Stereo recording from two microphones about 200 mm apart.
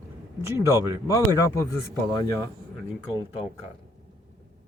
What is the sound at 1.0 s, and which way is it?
Speech, 15° left (ahead or behind).